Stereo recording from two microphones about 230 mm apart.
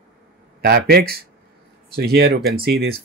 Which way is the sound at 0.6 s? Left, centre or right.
Right.